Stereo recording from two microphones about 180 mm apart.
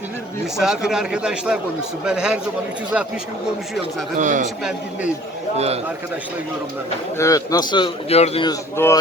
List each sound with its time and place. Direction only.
0.5 s speech: 5° right (ahead or behind)
4.2 s a man's voice: 45° right (ahead or behind)
5.5 s a man's voice: 35° right (ahead or behind)
7.2 s a man's voice: 20° left (ahead or behind); by 8.4 s 35° left (ahead or behind)
8.4 s speech: 15° left (ahead or behind)